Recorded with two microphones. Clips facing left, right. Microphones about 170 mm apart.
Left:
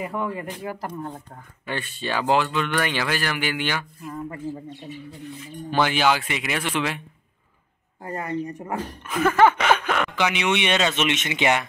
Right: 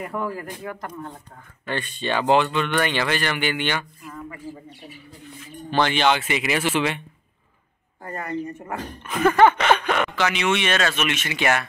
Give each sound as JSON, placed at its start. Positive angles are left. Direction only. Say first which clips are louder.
{"t": 0.0, "sound": "speech", "louder": "even", "side_deg": 0}
{"t": 0.7, "sound": "speech", "louder": "left 2 dB", "side_deg": 30}
{"t": 1.7, "sound": "speech", "louder": "right 2 dB", "side_deg": 5}
{"t": 4.0, "sound": "speech", "louder": "left 4 dB", "side_deg": 35}
{"t": 5.7, "sound": "speech", "louder": "right 1 dB", "side_deg": 5}
{"t": 8.0, "sound": "speech", "louder": "left 1 dB", "side_deg": 15}
{"t": 10.1, "sound": "speech", "louder": "right 1 dB", "side_deg": 15}